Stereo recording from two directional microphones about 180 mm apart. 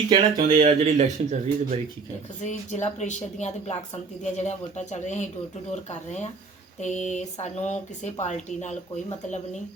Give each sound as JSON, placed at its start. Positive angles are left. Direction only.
{"t": 0.1, "sound": "speech", "side_deg": -25}
{"t": 0.4, "sound": "speech", "side_deg": -40}
{"t": 2.4, "sound": "speech", "side_deg": 40}